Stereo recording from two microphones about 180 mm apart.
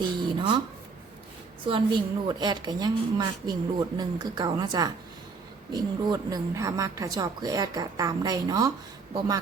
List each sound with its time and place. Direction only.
0.0 s speech: 25° right (ahead or behind)
1.6 s a woman's voice: 25° right (ahead or behind)